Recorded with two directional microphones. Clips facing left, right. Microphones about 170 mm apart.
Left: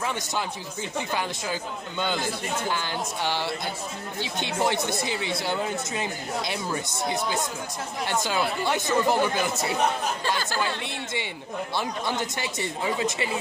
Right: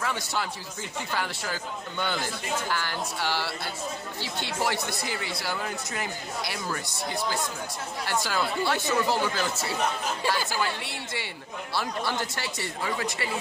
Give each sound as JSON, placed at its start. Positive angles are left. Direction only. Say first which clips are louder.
{"t": 0.0, "sound": "speech", "louder": "left 1 dB", "side_deg": 20}
{"t": 10.2, "sound": "speech", "louder": "even", "side_deg": -10}
{"t": 10.8, "sound": "speech", "louder": "left 3 dB", "side_deg": 20}